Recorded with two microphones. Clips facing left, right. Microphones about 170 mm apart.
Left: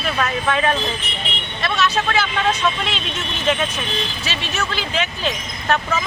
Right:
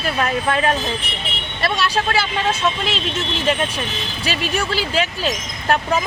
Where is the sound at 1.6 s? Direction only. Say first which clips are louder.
Even; 35° right (ahead or behind).